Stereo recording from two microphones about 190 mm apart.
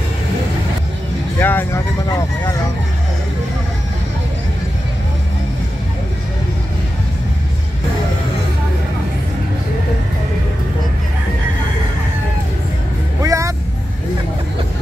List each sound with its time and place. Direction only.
1.4 s speech: 10° left (ahead or behind)
2.0 s vehicle: 20° left (ahead or behind)
13.2 s vehicle: 15° right (ahead or behind)